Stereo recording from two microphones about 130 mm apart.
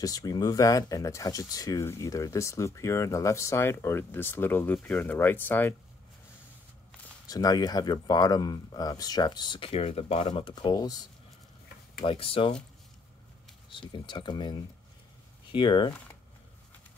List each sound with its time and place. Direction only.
0.0 s speech: 30° left (ahead or behind)
7.2 s speech: 30° left (ahead or behind)
9.7 s speech: 50° left (ahead or behind); by 11.1 s 30° left (ahead or behind)
12.0 s speech: 45° left (ahead or behind)
13.7 s speech: 40° left (ahead or behind)